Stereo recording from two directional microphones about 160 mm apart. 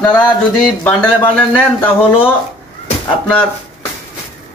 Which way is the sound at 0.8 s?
10° left (ahead or behind).